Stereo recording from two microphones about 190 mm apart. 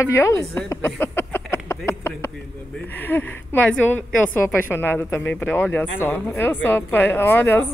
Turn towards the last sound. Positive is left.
turn(degrees=10)  # may be behind; listen again after turning